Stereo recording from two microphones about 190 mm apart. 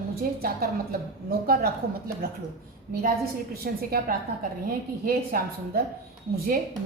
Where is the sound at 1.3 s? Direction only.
50° right (ahead or behind).